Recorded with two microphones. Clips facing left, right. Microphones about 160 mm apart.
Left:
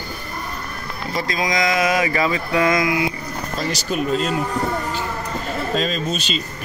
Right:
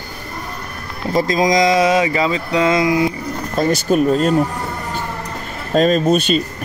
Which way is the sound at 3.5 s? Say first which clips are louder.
Right 9 dB; 50° right (ahead or behind).